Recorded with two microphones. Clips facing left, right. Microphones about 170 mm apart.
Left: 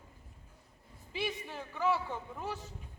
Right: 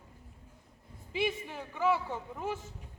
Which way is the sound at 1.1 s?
15° right (ahead or behind).